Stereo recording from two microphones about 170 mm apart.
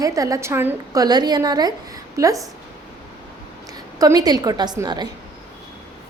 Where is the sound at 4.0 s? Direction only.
20° right (ahead or behind).